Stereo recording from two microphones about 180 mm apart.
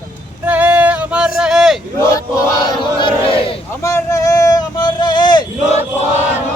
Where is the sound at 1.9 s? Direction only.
15° left (ahead or behind).